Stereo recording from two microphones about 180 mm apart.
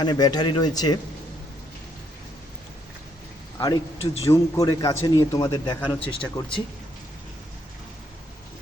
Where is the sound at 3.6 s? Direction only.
20° left (ahead or behind).